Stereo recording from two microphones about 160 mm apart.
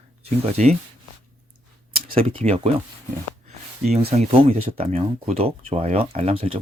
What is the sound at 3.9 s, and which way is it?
Speech, 40° right (ahead or behind).